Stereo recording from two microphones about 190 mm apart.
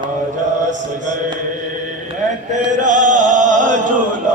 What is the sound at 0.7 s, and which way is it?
Mantra, 40° right (ahead or behind).